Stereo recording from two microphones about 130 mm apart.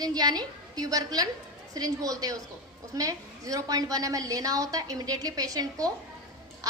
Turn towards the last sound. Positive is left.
turn(degrees=-30)  # may be behind; listen again after turning